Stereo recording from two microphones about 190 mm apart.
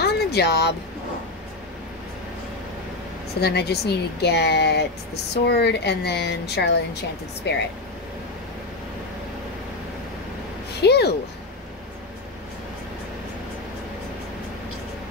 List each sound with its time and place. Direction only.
0.0 s vehicle: 60° left (ahead or behind)
3.3 s speech: 60° left (ahead or behind)
10.8 s speech: 60° left (ahead or behind)